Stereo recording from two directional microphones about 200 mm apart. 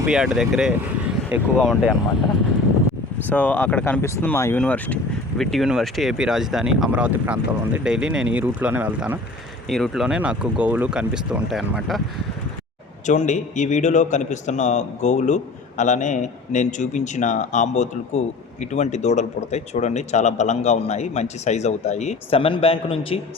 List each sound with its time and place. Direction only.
0.0 s speech: 5° right (ahead or behind)
3.2 s speech: 10° left (ahead or behind)
13.1 s speech: 35° left (ahead or behind)